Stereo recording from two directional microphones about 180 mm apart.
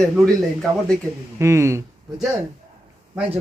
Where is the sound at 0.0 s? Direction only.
Centre (ahead or behind).